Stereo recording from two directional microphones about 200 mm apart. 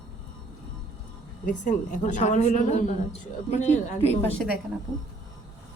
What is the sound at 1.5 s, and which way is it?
A woman's voice, 40° left (ahead or behind).